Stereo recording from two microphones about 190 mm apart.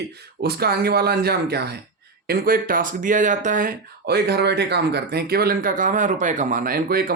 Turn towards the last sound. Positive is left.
turn(degrees=-50)  # may be behind; listen again after turning